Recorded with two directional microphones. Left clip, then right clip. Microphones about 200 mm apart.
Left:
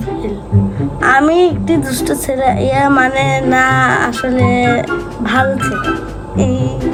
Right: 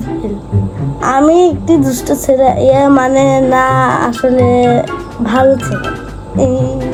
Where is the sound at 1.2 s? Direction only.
35° right (ahead or behind).